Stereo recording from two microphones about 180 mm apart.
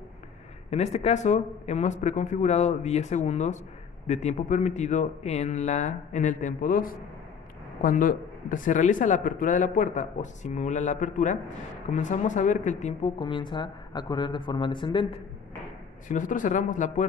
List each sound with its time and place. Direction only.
0.7 s speech: 35° left (ahead or behind)
13.2 s speech: 25° left (ahead or behind)
16.1 s speech: 45° left (ahead or behind)